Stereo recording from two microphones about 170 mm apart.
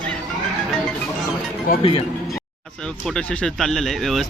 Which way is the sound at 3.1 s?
5° left (ahead or behind).